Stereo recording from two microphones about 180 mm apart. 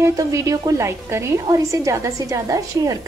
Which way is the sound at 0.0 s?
20° right (ahead or behind).